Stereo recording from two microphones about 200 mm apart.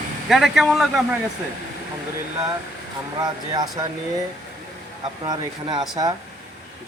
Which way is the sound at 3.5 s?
20° right (ahead or behind).